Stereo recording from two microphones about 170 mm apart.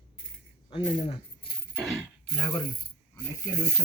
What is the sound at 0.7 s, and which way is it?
Speech, 30° left (ahead or behind).